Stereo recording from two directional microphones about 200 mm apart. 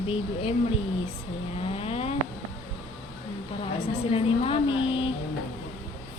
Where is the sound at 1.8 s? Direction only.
30° left (ahead or behind).